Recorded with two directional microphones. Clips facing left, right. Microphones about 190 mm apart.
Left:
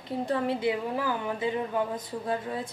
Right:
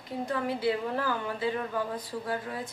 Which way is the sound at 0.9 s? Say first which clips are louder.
Left 1 dB; 15° left (ahead or behind).